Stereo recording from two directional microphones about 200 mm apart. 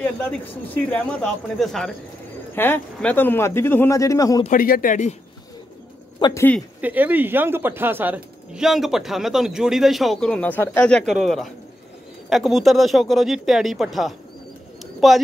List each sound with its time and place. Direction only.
0.8 s a man's voice: 5° left (ahead or behind)
4.5 s speech: 45° left (ahead or behind)
6.1 s speech: 20° left (ahead or behind)
6.8 s speech: 10° right (ahead or behind)